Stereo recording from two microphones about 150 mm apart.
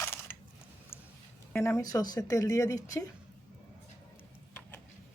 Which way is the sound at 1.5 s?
15° left (ahead or behind).